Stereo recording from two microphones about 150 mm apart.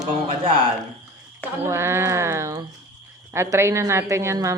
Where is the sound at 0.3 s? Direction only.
35° right (ahead or behind).